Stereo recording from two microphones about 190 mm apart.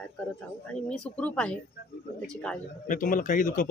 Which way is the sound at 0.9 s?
5° left (ahead or behind).